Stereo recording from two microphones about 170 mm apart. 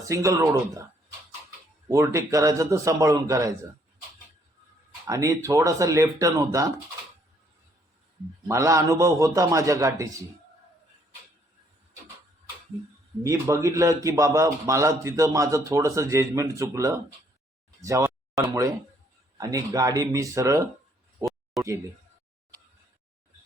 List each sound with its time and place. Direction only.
0.1 s a man's voice: 20° right (ahead or behind)
1.9 s a man's voice: 20° right (ahead or behind)
5.0 s a man's voice: 20° right (ahead or behind)
8.4 s a man's voice: 20° right (ahead or behind)
13.2 s a man's voice: 20° right (ahead or behind)
21.2 s a sound: 20° right (ahead or behind)
21.6 s speech: centre (ahead or behind)